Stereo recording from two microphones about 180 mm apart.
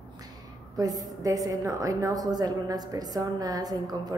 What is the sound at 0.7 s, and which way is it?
A woman's voice, 20° right (ahead or behind).